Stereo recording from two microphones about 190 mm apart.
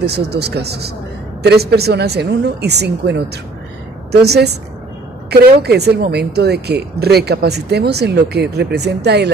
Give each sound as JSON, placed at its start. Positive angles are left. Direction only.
{"t": 0.0, "sound": "a woman's voice", "side_deg": -60}